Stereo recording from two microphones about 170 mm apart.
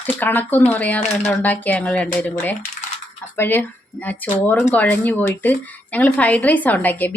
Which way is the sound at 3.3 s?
10° left (ahead or behind).